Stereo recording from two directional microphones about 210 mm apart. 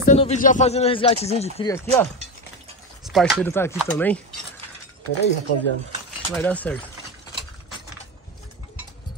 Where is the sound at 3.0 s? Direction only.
Centre (ahead or behind).